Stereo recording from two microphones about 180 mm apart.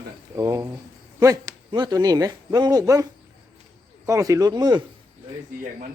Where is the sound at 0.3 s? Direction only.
15° right (ahead or behind).